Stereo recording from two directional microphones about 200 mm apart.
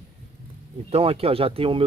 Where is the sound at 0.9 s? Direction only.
30° right (ahead or behind).